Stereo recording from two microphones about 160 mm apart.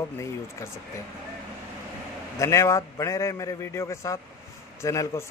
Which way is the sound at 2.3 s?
20° left (ahead or behind).